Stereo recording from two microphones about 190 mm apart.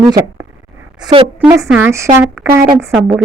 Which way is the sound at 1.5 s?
15° right (ahead or behind).